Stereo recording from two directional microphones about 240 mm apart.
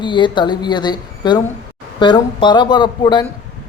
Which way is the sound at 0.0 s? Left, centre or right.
Centre.